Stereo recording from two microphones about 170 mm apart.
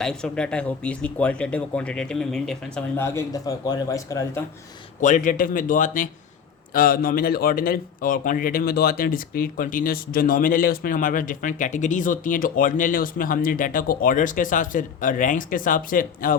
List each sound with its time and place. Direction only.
0.0 s speech: 5° left (ahead or behind)
3.0 s a man's voice: 20° left (ahead or behind)
4.9 s a man's voice: 50° left (ahead or behind)